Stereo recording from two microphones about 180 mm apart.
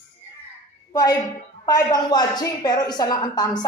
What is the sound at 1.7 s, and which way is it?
A woman's voice, 20° left (ahead or behind).